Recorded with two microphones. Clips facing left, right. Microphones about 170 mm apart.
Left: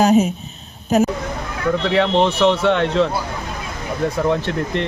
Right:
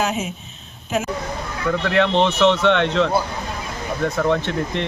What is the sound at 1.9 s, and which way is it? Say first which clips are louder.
Speech: even; centre (ahead or behind).